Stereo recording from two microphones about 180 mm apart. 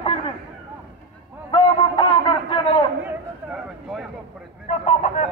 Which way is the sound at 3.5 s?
5° right (ahead or behind).